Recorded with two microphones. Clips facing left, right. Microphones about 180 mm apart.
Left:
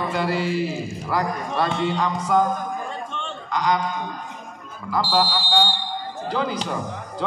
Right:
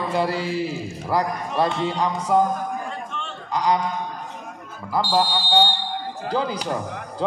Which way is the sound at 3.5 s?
35° right (ahead or behind).